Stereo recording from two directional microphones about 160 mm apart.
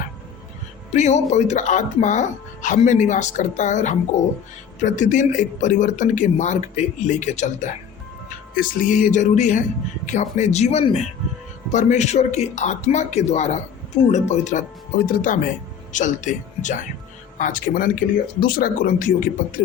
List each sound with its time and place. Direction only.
0.9 s speech: 45° left (ahead or behind)